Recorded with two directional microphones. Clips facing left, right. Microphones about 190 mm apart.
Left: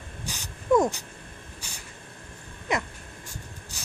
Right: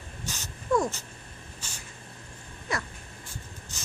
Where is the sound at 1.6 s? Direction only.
15° left (ahead or behind).